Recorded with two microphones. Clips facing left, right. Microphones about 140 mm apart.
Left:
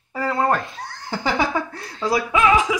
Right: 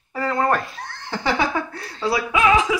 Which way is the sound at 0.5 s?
25° left (ahead or behind).